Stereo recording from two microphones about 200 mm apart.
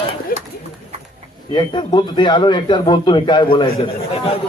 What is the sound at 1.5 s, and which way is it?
Speech, 25° left (ahead or behind).